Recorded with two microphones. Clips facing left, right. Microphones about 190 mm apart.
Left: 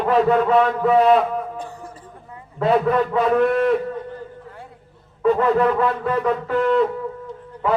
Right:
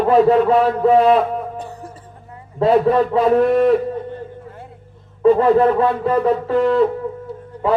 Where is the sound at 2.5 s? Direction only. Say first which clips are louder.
Right 4 dB; 30° right (ahead or behind).